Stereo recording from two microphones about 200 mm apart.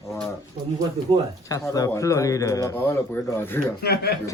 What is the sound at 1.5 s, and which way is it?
Speech, 15° left (ahead or behind).